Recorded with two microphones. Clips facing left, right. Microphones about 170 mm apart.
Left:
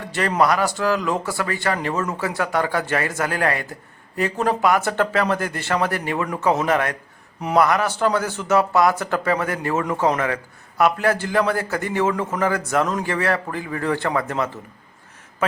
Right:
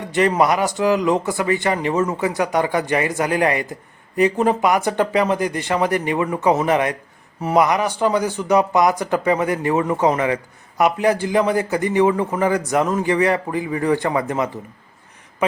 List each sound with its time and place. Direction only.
0.0 s speech: 20° right (ahead or behind)